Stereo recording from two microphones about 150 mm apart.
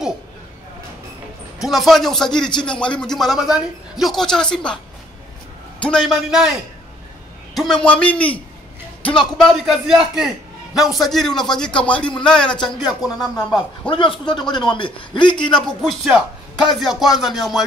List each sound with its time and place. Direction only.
1.6 s speech: centre (ahead or behind)
5.8 s speech: 5° left (ahead or behind)
7.5 s a man's voice: 5° left (ahead or behind)
13.8 s a man's voice: 35° left (ahead or behind)
15.5 s speech: 5° left (ahead or behind)